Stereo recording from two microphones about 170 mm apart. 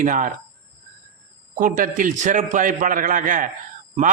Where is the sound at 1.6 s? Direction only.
50° right (ahead or behind).